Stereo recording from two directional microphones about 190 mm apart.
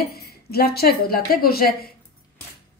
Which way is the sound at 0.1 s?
55° left (ahead or behind).